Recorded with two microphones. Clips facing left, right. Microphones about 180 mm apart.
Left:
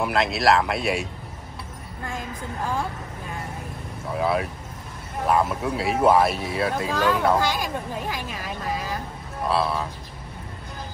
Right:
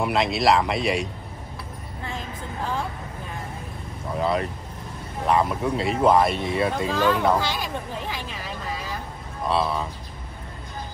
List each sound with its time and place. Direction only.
0.0 s speech: centre (ahead or behind)
4.1 s speech: 5° left (ahead or behind)
7.4 s speech: 45° left (ahead or behind)
9.5 s speech: centre (ahead or behind)